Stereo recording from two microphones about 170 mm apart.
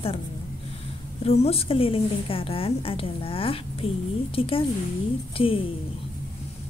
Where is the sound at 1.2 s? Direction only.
35° left (ahead or behind).